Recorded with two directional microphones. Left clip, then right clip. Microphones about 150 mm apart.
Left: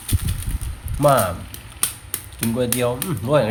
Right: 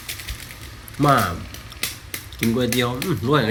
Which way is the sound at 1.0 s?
25° left (ahead or behind).